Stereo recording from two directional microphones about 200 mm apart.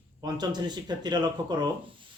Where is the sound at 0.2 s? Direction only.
20° right (ahead or behind).